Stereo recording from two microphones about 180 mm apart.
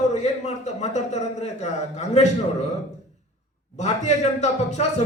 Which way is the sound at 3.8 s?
40° left (ahead or behind).